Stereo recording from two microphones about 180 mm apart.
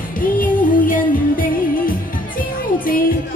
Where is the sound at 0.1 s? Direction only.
50° left (ahead or behind).